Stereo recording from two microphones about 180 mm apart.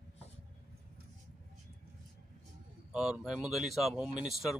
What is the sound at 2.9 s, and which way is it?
Speech, 5° right (ahead or behind).